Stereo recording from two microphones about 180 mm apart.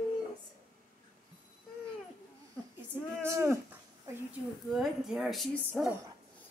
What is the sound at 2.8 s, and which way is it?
Speech, 15° right (ahead or behind).